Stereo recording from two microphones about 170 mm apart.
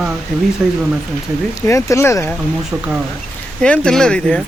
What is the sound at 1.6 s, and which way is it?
Speech, 20° left (ahead or behind).